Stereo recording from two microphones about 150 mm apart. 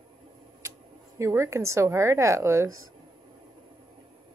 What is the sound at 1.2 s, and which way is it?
A woman's voice, 20° right (ahead or behind).